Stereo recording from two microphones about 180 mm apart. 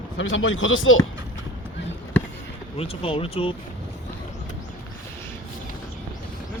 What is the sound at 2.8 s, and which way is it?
Speech, 30° left (ahead or behind).